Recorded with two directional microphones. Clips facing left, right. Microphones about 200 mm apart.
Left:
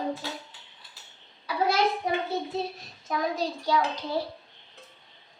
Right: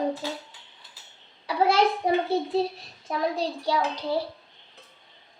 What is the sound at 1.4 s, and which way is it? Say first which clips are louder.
A child's voice: right 3 dB; 30° right (ahead or behind).